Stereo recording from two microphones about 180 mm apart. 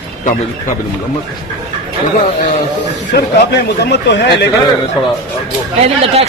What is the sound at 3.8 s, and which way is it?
Speech, 70° left (ahead or behind).